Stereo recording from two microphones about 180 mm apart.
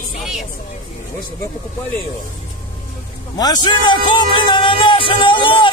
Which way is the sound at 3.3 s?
20° left (ahead or behind).